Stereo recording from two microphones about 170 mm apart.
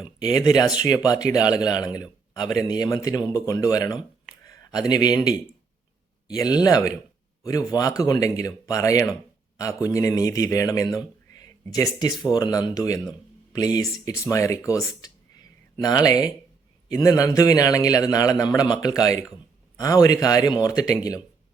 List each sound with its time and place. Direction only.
0.3 s a man's voice: 25° left (ahead or behind)